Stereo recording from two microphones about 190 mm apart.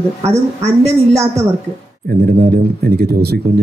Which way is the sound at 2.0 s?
55° right (ahead or behind).